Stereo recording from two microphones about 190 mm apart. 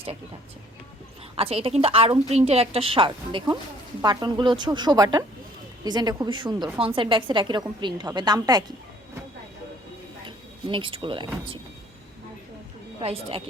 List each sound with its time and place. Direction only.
1.4 s a woman's voice: 30° right (ahead or behind)
10.2 s speech: 25° right (ahead or behind)
13.0 s speech: 30° right (ahead or behind)